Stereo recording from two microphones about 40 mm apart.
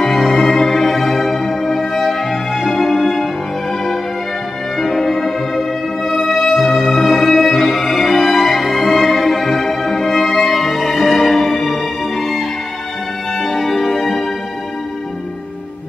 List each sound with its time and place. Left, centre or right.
0.3 s music: centre
4.7 s music: centre